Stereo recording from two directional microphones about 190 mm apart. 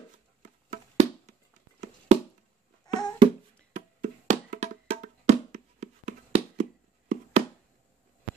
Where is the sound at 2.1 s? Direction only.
35° right (ahead or behind).